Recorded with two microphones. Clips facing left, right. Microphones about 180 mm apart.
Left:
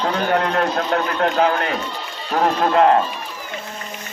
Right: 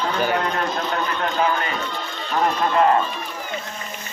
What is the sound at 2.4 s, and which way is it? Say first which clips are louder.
Speech: left 3 dB; 70° left (ahead or behind).